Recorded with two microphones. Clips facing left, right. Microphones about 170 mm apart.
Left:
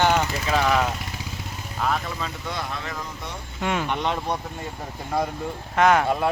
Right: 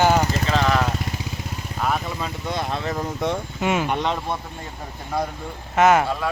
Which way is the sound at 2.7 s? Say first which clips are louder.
Right 7 dB; 35° right (ahead or behind).